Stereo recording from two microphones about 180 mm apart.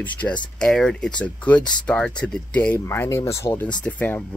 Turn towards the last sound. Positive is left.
turn(degrees=10)  # may be behind; listen again after turning